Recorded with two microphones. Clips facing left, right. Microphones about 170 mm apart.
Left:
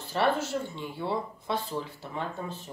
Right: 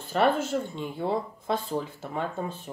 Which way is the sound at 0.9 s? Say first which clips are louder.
Right 3 dB; 45° right (ahead or behind).